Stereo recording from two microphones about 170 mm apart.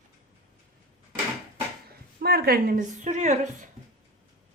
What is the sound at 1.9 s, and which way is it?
A woman's voice, 65° right (ahead or behind).